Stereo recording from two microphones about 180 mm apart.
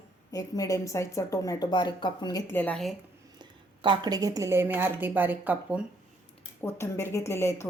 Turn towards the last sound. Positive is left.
turn(degrees=15)  # may be behind; listen again after turning